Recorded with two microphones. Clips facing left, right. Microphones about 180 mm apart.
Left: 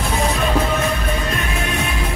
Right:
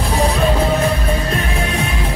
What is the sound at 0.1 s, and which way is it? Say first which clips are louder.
Music: right 3 dB; 35° right (ahead or behind).